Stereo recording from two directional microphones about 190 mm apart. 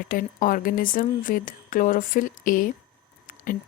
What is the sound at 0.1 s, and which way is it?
Speech, 45° left (ahead or behind).